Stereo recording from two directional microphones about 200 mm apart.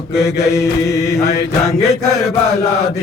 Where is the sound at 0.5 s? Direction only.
15° left (ahead or behind).